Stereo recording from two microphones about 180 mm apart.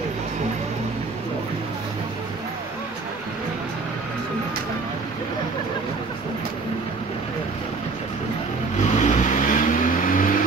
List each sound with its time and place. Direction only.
8.7 s vehicle: 40° left (ahead or behind)